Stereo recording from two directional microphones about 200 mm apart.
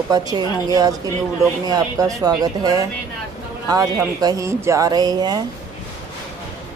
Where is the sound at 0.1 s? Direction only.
20° right (ahead or behind).